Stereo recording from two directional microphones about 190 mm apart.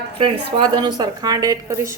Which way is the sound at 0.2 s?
25° right (ahead or behind).